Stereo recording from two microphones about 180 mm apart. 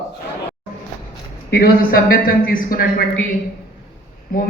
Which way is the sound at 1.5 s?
55° left (ahead or behind).